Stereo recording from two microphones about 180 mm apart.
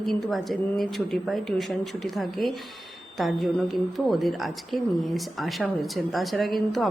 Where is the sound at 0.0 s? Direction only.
Centre (ahead or behind).